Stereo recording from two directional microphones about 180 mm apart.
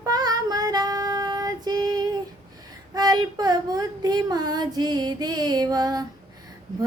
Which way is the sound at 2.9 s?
20° right (ahead or behind).